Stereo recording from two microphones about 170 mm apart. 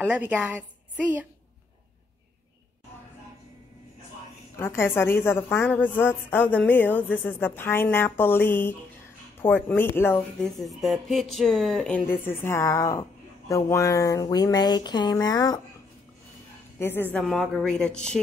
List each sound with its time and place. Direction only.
0.0 s a woman's voice: 10° right (ahead or behind)
4.6 s a woman's voice: 15° left (ahead or behind)
10.4 s speech: centre (ahead or behind); by 15.6 s 25° left (ahead or behind)
16.7 s a woman's voice: 15° left (ahead or behind)
17.2 s speech: centre (ahead or behind)